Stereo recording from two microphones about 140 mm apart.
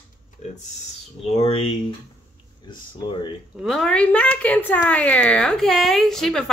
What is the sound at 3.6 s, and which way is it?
A woman's voice, 5° left (ahead or behind).